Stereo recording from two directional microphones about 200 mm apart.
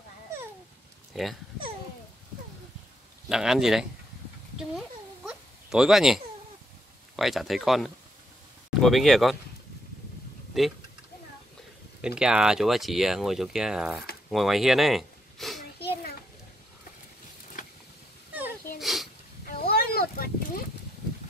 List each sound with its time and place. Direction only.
1.1 s speech: centre (ahead or behind)
3.3 s speech: 5° right (ahead or behind)
4.6 s a sound: 5° right (ahead or behind)
7.2 s speech: centre (ahead or behind)
10.6 s speech: centre (ahead or behind)
12.2 s speech: 5° right (ahead or behind)
18.8 s sneeze: centre (ahead or behind)
19.4 s a sound: 50° left (ahead or behind)